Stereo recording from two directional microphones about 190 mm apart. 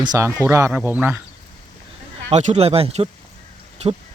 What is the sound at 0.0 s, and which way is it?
Speech, 15° right (ahead or behind).